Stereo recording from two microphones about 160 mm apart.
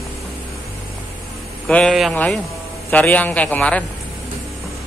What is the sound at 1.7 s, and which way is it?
Speech, 5° left (ahead or behind).